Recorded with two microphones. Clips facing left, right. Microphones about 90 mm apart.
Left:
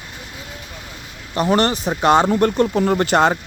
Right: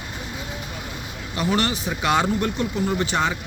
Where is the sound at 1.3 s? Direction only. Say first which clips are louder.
Left 6 dB; 40° left (ahead or behind).